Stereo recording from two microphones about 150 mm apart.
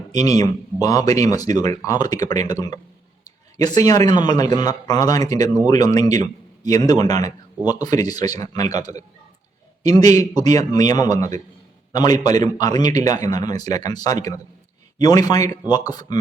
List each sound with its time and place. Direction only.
0.3 s a man's voice: 25° left (ahead or behind)